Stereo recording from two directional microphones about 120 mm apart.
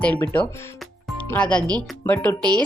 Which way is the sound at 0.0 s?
10° left (ahead or behind).